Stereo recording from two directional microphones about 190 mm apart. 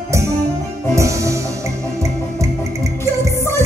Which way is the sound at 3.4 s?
15° left (ahead or behind).